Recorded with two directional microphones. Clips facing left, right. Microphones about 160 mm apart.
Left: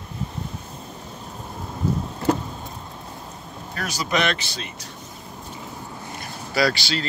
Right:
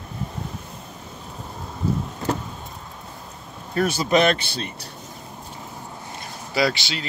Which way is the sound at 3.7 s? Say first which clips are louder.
Right 6 dB; 25° right (ahead or behind).